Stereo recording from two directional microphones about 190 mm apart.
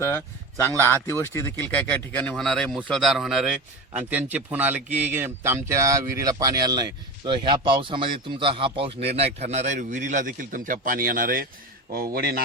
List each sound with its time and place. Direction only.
0.0 s a man's voice: 10° left (ahead or behind); by 12.4 s 55° right (ahead or behind)